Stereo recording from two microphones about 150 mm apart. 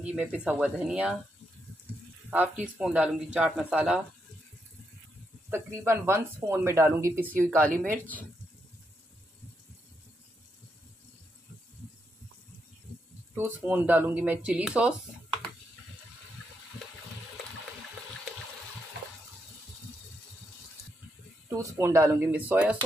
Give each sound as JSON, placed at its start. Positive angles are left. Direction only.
{"t": 0.0, "sound": "speech", "side_deg": -5}
{"t": 2.3, "sound": "speech", "side_deg": -10}
{"t": 5.5, "sound": "speech", "side_deg": -15}
{"t": 7.5, "sound": "speech", "side_deg": 10}
{"t": 13.7, "sound": "speech", "side_deg": -10}
{"t": 21.5, "sound": "speech", "side_deg": -20}